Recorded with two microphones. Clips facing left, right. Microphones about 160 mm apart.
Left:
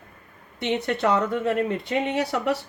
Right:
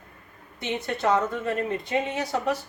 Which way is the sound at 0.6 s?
65° left (ahead or behind).